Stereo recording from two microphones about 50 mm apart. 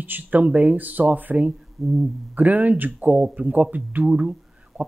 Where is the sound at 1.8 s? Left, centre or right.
Centre.